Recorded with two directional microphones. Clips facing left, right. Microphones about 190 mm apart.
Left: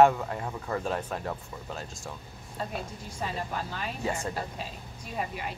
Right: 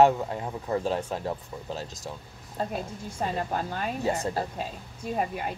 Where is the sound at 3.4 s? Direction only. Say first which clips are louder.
Right 4 dB; 50° right (ahead or behind).